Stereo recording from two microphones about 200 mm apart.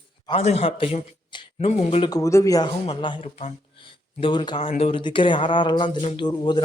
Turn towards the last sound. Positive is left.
turn(degrees=25)  # may be behind; listen again after turning